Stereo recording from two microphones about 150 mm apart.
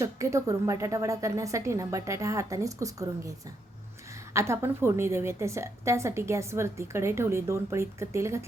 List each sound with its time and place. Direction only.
0.0 s a woman's voice: 20° right (ahead or behind)
4.4 s a woman's voice: 15° right (ahead or behind)